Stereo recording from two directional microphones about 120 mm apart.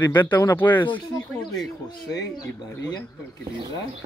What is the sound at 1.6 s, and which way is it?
Speech, 35° left (ahead or behind).